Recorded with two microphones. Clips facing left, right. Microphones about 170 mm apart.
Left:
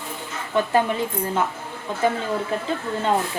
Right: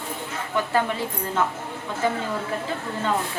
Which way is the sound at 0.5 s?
20° left (ahead or behind).